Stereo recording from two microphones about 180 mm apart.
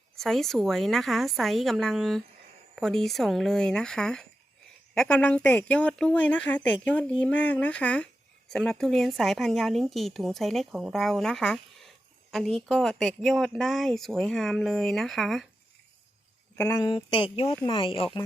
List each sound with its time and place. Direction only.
0.2 s speech: centre (ahead or behind)
16.6 s speech: 20° left (ahead or behind)